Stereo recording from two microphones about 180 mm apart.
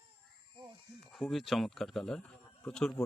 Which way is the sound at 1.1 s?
Centre (ahead or behind).